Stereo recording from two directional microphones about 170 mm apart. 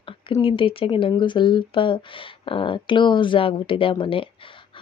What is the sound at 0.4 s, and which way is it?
Speech, 30° left (ahead or behind).